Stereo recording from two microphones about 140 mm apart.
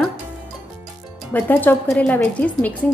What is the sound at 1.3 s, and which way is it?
A woman's voice, 15° left (ahead or behind).